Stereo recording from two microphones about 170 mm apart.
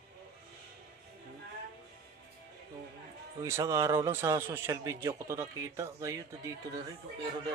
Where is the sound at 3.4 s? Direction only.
15° right (ahead or behind).